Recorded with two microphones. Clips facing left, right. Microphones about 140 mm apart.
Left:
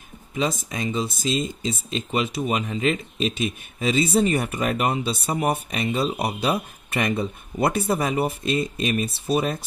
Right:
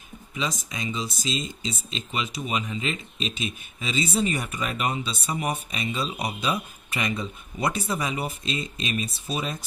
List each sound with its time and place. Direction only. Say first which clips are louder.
0.3 s speech: left 6 dB; 50° left (ahead or behind)